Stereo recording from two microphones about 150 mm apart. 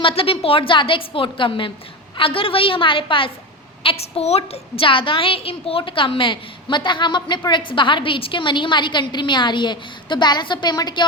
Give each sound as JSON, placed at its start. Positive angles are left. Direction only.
{"t": 0.0, "sound": "a woman's voice", "side_deg": 35}